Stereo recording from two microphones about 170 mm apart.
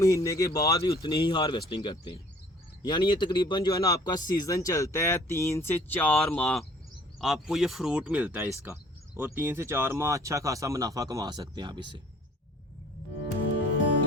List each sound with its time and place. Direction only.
0.0 s speech: 20° left (ahead or behind); by 12.0 s 25° right (ahead or behind)